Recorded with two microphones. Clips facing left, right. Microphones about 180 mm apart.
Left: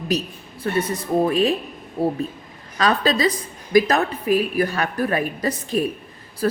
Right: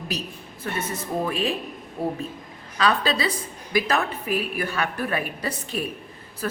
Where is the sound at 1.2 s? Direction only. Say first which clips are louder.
Left 7 dB; 35° left (ahead or behind).